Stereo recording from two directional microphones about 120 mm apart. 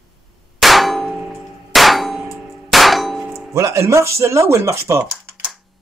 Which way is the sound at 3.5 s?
25° right (ahead or behind).